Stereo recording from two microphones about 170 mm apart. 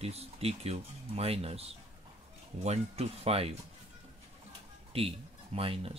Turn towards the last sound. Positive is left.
turn(degrees=-35)  # may be behind; listen again after turning